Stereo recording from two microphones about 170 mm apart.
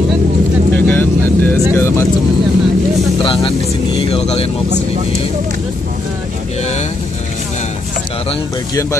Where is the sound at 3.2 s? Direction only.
30° left (ahead or behind).